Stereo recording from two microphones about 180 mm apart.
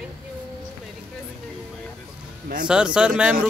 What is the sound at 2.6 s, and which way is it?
Speech, 5° right (ahead or behind).